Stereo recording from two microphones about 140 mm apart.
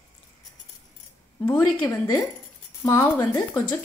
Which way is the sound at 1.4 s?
20° left (ahead or behind).